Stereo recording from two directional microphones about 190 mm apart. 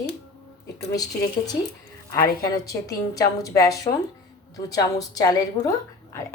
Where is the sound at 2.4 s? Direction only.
20° left (ahead or behind).